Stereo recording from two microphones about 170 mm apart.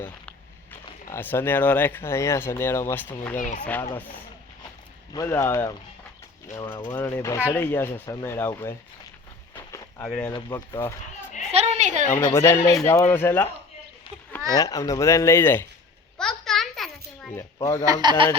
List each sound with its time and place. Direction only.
0.0 s speech: 10° left (ahead or behind)
5.1 s speech: 15° left (ahead or behind)
6.9 s speech: 15° left (ahead or behind)
10.1 s speech: 5° left (ahead or behind)
10.3 s speech: 25° left (ahead or behind)
11.5 s a sound: 40° right (ahead or behind)
12.0 s speech: 15° left (ahead or behind)
14.5 s speech: 20° left (ahead or behind)
16.1 s a sound: centre (ahead or behind)
17.3 s speech: 15° left (ahead or behind)
17.8 s speech: 25° right (ahead or behind)